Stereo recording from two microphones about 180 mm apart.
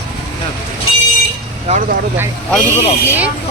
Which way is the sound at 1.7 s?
45° right (ahead or behind).